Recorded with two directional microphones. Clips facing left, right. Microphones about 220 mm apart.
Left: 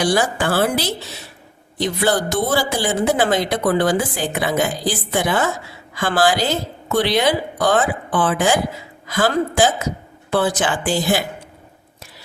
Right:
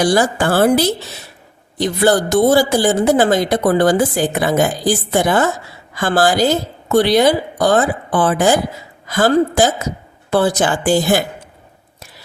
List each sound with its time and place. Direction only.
0.0 s a woman's voice: 40° right (ahead or behind)